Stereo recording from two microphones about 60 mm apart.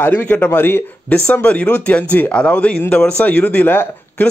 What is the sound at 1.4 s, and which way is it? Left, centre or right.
A man's voice, left.